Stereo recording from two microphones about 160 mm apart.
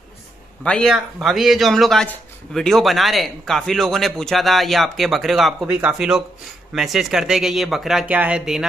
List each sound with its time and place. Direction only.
0.7 s speech: 5° left (ahead or behind)